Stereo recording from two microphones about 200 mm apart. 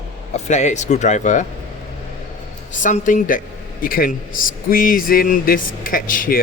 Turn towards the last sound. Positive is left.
turn(degrees=45)  # may be behind; listen again after turning